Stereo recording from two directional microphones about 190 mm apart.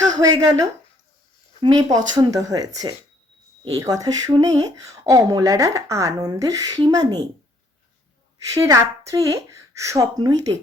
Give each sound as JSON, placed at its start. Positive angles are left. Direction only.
{"t": 0.2, "sound": "speech", "side_deg": -20}
{"t": 8.5, "sound": "a woman's voice", "side_deg": -15}